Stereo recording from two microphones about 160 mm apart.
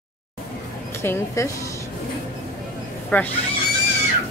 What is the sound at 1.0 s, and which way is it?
Speech, 20° left (ahead or behind).